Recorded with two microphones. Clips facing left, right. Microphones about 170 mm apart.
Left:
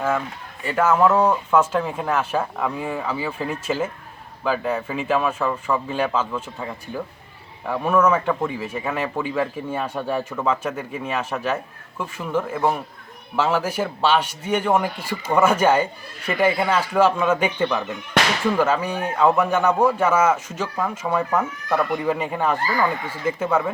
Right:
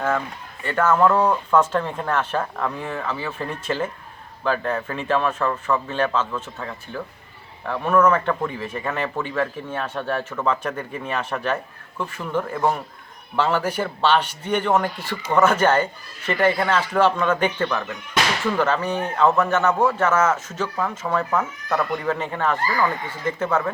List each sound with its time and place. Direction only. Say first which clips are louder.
0.6 s speech: even; 10° left (ahead or behind)